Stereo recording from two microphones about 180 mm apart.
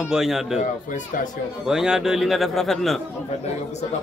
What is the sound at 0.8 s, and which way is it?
Speech, 45° left (ahead or behind).